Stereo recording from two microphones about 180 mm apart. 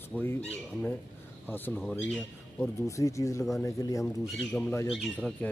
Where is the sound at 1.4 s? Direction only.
10° left (ahead or behind).